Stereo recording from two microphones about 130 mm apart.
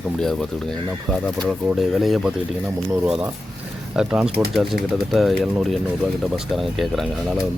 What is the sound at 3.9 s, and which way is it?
A man's voice, 5° right (ahead or behind).